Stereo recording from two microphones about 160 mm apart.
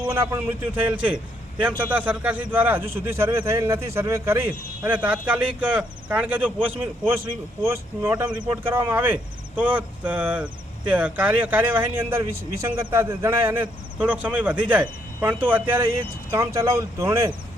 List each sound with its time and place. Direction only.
0.1 s a man's voice: 15° right (ahead or behind)